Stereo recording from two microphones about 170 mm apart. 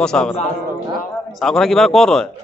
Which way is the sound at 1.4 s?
Centre (ahead or behind).